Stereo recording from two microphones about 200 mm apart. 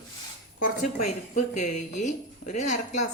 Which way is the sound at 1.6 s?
40° left (ahead or behind).